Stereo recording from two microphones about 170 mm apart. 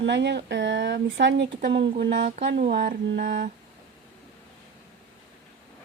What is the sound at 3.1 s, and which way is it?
Mantra, 80° right.